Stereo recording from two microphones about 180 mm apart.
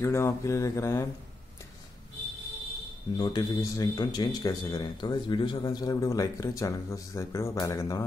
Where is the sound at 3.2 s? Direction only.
20° left (ahead or behind).